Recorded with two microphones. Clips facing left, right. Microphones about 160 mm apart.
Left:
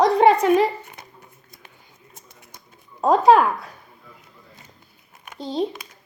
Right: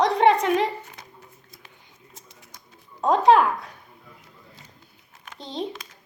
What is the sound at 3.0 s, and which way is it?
Speech, 5° left (ahead or behind).